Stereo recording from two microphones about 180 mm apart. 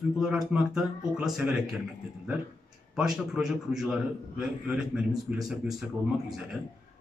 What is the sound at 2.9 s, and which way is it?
Speech, 5° right (ahead or behind).